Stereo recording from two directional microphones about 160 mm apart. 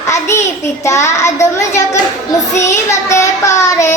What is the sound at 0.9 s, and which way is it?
Child singing, 20° left (ahead or behind).